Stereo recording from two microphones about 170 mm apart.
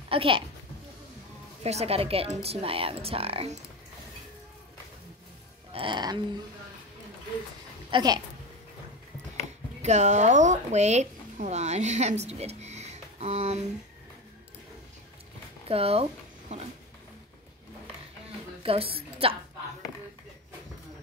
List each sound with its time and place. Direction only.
0.1 s a woman's voice: 30° right (ahead or behind)
1.6 s speech: 40° right (ahead or behind)
5.7 s music: 30° right (ahead or behind)
7.9 s music: 25° right (ahead or behind)
9.8 s speech: 40° right (ahead or behind)
15.7 s speech: 35° right (ahead or behind)
18.6 s a woman's voice: 35° right (ahead or behind)